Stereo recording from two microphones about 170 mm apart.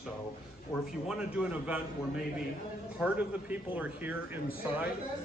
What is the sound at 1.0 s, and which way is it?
A man's voice, 5° right (ahead or behind).